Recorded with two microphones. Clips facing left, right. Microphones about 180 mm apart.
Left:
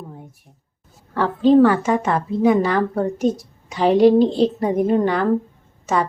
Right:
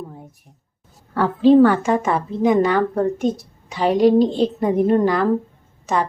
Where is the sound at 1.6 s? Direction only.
10° left (ahead or behind).